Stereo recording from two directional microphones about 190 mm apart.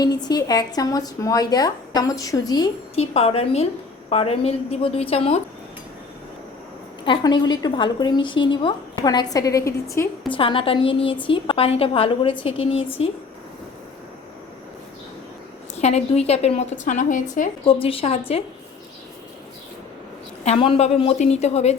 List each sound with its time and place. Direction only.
0.0 s a woman's voice: 20° left (ahead or behind)
2.9 s a woman's voice: 35° left (ahead or behind)
7.0 s a woman's voice: 25° left (ahead or behind)
10.2 s a woman's voice: 25° left (ahead or behind)
15.8 s a woman's voice: 35° left (ahead or behind)
17.7 s a woman's voice: 30° left (ahead or behind)
20.4 s a woman's voice: 30° left (ahead or behind)